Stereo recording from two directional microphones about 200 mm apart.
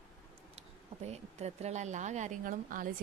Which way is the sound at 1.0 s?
35° right (ahead or behind).